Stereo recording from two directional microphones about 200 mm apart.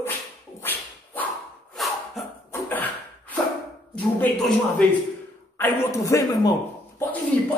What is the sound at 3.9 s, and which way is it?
A man's voice, 5° left (ahead or behind).